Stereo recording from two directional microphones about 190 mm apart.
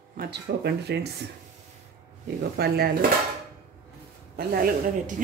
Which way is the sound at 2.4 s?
55° right (ahead or behind).